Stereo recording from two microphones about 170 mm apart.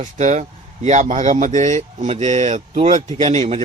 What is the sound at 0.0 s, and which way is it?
Speech, 45° right (ahead or behind).